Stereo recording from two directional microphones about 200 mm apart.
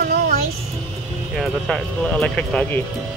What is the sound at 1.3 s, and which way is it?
Speech, centre (ahead or behind).